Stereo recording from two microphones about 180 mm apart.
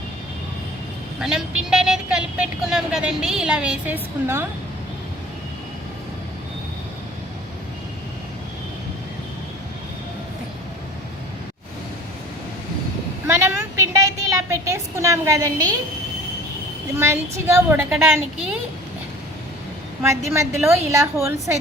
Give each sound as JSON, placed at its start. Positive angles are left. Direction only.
{"t": 1.2, "sound": "speech", "side_deg": -5}
{"t": 13.2, "sound": "vehicle", "side_deg": -15}
{"t": 17.0, "sound": "a woman's voice", "side_deg": -15}
{"t": 20.0, "sound": "a woman's voice", "side_deg": -15}